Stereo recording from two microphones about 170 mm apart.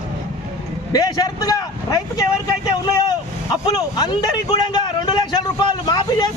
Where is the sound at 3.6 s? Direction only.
20° left (ahead or behind).